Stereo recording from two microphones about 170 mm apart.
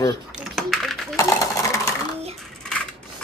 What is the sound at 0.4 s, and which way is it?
Typing, centre (ahead or behind).